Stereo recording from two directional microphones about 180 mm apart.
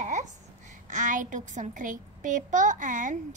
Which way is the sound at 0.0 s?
40° right (ahead or behind).